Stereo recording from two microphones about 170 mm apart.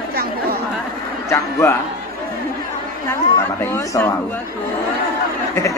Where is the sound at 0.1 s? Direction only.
65° right (ahead or behind).